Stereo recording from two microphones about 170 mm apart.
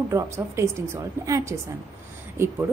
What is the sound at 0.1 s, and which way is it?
A woman's voice, 15° right (ahead or behind).